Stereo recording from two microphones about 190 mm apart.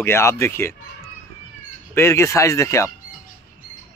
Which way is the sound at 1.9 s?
15° left (ahead or behind).